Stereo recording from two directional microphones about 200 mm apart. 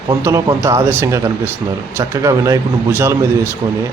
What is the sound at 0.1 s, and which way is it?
Speech, 15° right (ahead or behind).